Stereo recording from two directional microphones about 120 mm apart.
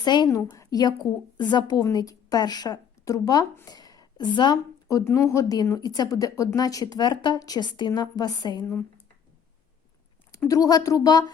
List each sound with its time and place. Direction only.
0.0 s a woman's voice: 35° left (ahead or behind)
3.7 s a sound: 30° left (ahead or behind)
4.9 s a woman's voice: 25° left (ahead or behind)
10.5 s a woman's voice: 30° left (ahead or behind)